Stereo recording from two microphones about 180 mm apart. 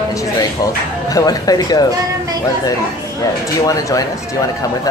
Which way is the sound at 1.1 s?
20° left (ahead or behind).